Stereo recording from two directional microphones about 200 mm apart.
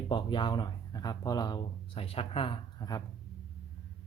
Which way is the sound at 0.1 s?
25° left (ahead or behind).